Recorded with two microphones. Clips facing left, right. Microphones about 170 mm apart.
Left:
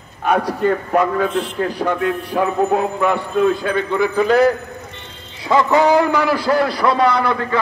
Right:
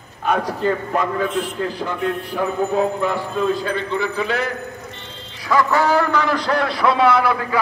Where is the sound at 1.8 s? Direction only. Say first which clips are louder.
Left 4 dB; 65° left (ahead or behind); by 4.5 s 40° left (ahead or behind).